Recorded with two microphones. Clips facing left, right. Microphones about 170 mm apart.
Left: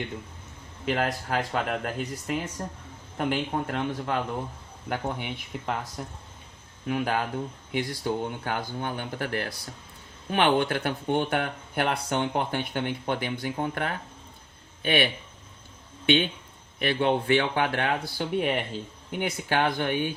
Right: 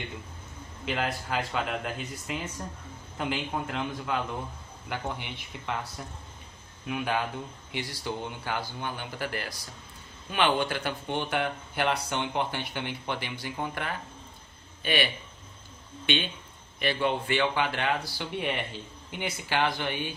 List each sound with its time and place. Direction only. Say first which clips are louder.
0.9 s speech: left 4 dB; 45° left (ahead or behind)
6.8 s a man's voice: left 3 dB; 40° left (ahead or behind); by 15.1 s 55° left (ahead or behind)
16.8 s speech: left 4 dB; 55° left (ahead or behind)